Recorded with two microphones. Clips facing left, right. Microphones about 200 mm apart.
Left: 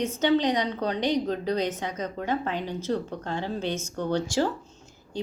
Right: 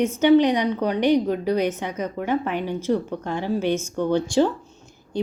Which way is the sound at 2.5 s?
55° right (ahead or behind).